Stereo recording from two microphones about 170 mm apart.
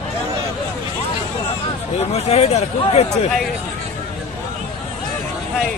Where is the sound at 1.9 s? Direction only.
40° left (ahead or behind).